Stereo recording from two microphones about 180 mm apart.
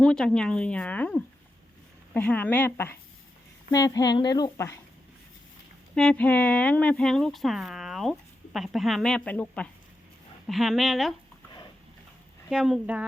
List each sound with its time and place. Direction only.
0.0 s a woman's voice: 5° left (ahead or behind)
5.9 s speech: 5° left (ahead or behind)
12.5 s speech: 5° right (ahead or behind)